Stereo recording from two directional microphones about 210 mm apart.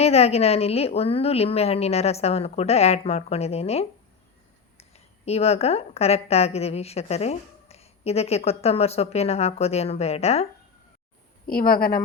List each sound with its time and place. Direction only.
0.0 s a woman's voice: 30° left (ahead or behind)
11.4 s a woman's voice: 45° left (ahead or behind)